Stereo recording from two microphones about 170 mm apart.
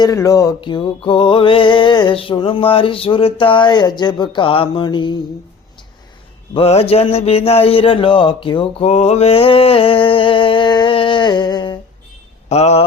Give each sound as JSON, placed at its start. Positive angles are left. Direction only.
{"t": 0.0, "sound": "music", "side_deg": 20}
{"t": 6.5, "sound": "mantra", "side_deg": 35}
{"t": 12.5, "sound": "mantra", "side_deg": 40}